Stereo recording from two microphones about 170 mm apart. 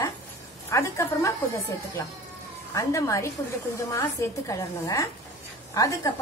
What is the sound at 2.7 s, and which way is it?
A woman's voice, 20° left (ahead or behind).